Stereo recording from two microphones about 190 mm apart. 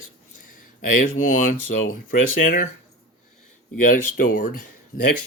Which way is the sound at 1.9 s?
45° left (ahead or behind).